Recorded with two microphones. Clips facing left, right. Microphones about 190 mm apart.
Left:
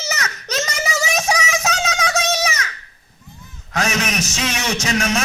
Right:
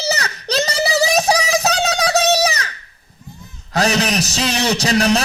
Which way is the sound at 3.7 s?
35° right (ahead or behind).